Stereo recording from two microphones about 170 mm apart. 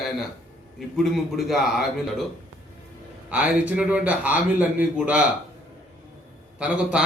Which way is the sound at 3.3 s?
10° right (ahead or behind).